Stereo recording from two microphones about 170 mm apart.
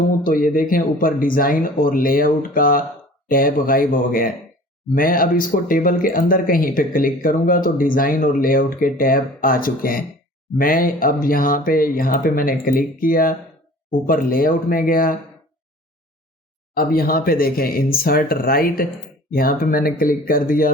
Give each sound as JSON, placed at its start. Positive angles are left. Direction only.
{"t": 0.2, "sound": "speech", "side_deg": 55}
{"t": 16.7, "sound": "speech", "side_deg": 60}